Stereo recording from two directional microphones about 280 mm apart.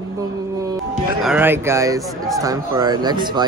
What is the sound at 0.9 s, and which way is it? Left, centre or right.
Speech, centre.